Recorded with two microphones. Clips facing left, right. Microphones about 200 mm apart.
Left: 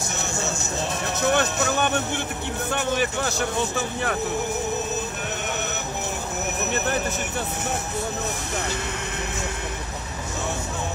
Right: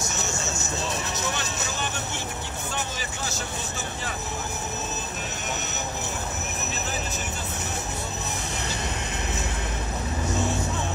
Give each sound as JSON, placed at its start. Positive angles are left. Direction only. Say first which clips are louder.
{"t": 1.2, "sound": "speech", "louder": "left 9 dB", "side_deg": 60}